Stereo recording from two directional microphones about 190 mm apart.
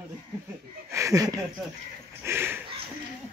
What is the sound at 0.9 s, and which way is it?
Speech, 15° right (ahead or behind).